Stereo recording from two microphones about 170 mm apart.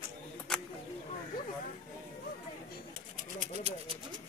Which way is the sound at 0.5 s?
5° left (ahead or behind).